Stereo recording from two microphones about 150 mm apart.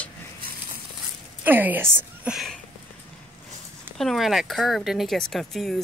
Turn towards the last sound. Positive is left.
turn(degrees=0)  # may be behind; listen again after turning